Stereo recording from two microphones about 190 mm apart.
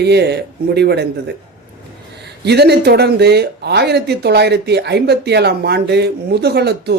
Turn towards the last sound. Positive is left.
turn(degrees=-60)  # may be behind; listen again after turning